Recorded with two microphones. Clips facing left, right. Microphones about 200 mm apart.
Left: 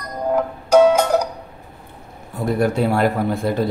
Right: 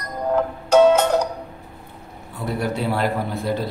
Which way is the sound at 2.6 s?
50° left (ahead or behind).